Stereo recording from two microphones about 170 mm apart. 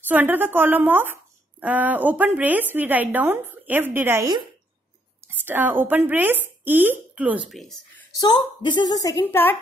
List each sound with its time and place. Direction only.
0.0 s speech: 10° right (ahead or behind)
8.2 s a woman's voice: 25° left (ahead or behind); by 9.6 s 10° left (ahead or behind)